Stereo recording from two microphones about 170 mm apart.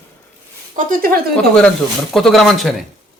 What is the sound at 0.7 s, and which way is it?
Speech, 55° right (ahead or behind).